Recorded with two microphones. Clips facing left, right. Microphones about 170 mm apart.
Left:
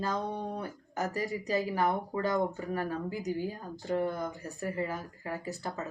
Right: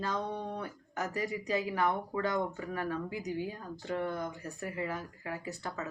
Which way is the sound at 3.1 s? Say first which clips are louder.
Left 2 dB; 5° left (ahead or behind).